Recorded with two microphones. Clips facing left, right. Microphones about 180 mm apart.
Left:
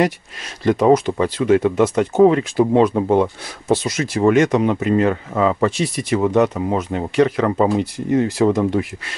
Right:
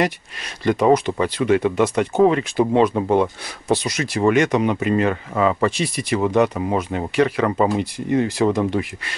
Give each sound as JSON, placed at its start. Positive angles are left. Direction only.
{"t": 0.7, "sound": "speech", "side_deg": 5}
{"t": 3.7, "sound": "speech", "side_deg": -15}
{"t": 4.1, "sound": "speech", "side_deg": 0}
{"t": 5.7, "sound": "speech", "side_deg": -10}
{"t": 6.1, "sound": "speech", "side_deg": 5}